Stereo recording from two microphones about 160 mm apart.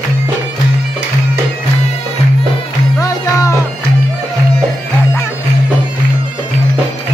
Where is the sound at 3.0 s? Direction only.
20° left (ahead or behind).